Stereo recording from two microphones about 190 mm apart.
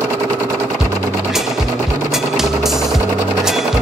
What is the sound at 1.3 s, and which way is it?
Music, centre (ahead or behind).